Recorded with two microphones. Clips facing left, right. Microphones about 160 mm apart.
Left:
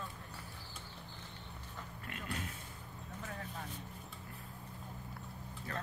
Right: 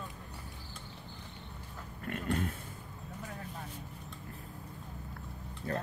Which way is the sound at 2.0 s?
50° right (ahead or behind).